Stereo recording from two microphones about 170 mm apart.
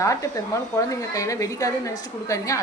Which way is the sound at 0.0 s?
20° left (ahead or behind).